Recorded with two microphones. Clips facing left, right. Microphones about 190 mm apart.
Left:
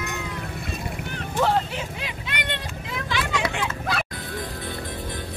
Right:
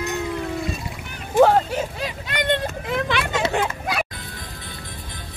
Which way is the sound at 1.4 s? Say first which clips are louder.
Right 7 dB; 45° right (ahead or behind).